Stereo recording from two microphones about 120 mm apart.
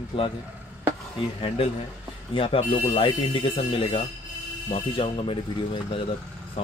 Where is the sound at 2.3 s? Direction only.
50° left (ahead or behind).